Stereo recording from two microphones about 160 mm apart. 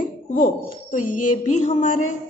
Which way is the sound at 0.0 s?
60° left (ahead or behind).